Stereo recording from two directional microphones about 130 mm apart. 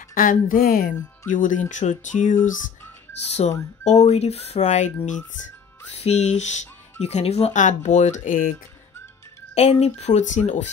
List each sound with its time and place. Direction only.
0.1 s speech: 90° left
1.7 s music: 70° left (ahead or behind)
3.3 s speech: 60° left (ahead or behind)
5.9 s speech: 60° left (ahead or behind); by 8.5 s 80° left
9.6 s speech: 60° left (ahead or behind)